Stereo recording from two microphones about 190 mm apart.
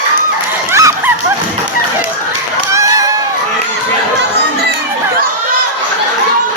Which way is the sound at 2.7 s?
15° right (ahead or behind).